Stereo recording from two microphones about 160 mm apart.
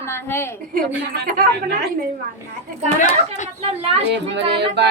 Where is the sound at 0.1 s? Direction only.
15° left (ahead or behind).